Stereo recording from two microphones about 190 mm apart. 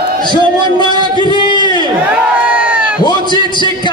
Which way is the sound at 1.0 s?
25° left (ahead or behind).